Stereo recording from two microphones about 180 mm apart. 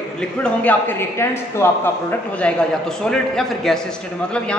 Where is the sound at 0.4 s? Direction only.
10° left (ahead or behind).